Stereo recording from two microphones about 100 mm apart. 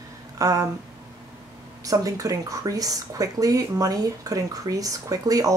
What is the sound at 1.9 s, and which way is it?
Speech, 35° right (ahead or behind).